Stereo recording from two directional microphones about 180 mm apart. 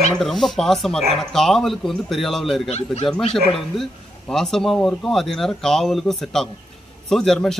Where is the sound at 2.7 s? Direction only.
35° left (ahead or behind).